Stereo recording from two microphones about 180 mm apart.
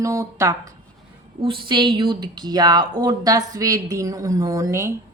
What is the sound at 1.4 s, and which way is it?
A woman's voice, 30° right (ahead or behind).